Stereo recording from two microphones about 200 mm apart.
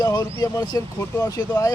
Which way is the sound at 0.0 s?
20° left (ahead or behind).